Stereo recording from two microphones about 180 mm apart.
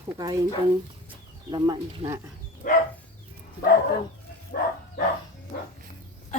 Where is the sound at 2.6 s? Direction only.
50° left (ahead or behind).